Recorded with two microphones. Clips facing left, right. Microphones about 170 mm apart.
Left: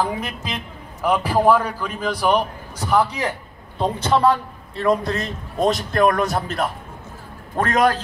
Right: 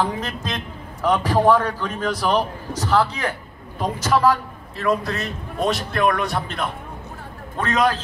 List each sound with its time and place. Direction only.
0.0 s a man's voice: 5° left (ahead or behind)
4.1 s a man's voice: 30° left (ahead or behind)